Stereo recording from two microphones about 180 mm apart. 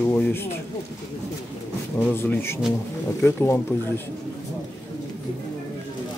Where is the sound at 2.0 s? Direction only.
10° left (ahead or behind).